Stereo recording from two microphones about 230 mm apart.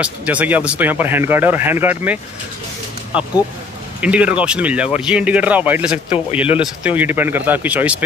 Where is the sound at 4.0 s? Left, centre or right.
Centre.